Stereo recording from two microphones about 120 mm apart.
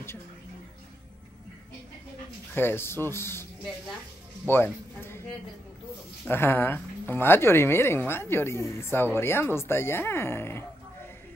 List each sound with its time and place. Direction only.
2.5 s a woman's voice: 20° left (ahead or behind)
6.2 s a woman's voice: 20° left (ahead or behind)